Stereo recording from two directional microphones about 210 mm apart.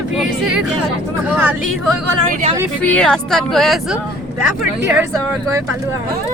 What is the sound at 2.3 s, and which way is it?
Speech, 30° right (ahead or behind).